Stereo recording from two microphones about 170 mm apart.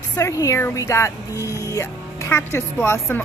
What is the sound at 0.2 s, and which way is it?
Speech, 20° left (ahead or behind).